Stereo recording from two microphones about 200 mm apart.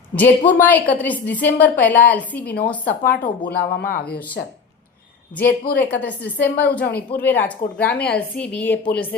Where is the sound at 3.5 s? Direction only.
50° left (ahead or behind).